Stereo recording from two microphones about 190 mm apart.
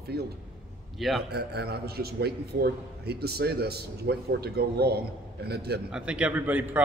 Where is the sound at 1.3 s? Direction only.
60° right (ahead or behind).